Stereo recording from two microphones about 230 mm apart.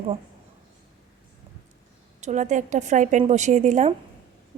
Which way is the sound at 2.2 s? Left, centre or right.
Right.